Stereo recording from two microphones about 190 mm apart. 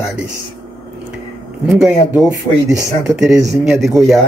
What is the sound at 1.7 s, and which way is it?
Speech, 5° right (ahead or behind).